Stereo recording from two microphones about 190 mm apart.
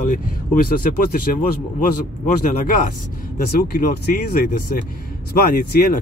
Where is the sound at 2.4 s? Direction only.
40° left (ahead or behind).